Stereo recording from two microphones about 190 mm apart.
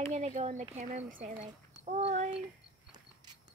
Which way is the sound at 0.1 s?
35° right (ahead or behind).